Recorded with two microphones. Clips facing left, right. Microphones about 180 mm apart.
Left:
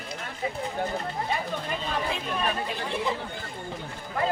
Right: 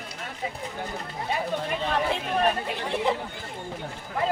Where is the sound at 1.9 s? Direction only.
65° right (ahead or behind).